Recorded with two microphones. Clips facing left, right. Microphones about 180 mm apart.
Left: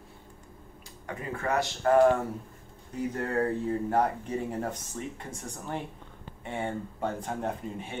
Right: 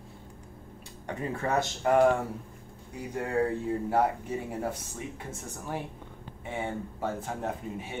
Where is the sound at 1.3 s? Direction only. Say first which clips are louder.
Even; 30° right (ahead or behind).